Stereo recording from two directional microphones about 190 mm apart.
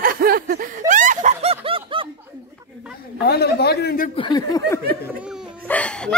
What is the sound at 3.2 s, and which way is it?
Speech, 55° left (ahead or behind).